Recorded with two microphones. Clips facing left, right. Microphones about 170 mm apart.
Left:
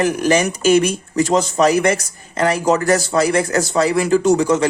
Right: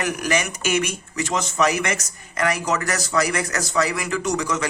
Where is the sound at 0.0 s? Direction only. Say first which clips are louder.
Left 8 dB; 30° left (ahead or behind).